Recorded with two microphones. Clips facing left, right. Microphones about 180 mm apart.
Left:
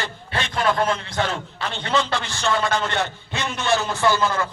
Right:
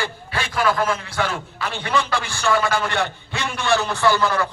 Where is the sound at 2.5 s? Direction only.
25° left (ahead or behind).